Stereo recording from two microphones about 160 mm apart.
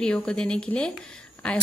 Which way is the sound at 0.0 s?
5° left (ahead or behind).